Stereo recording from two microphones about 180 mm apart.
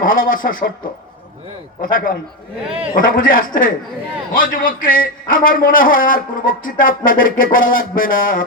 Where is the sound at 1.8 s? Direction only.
50° left (ahead or behind).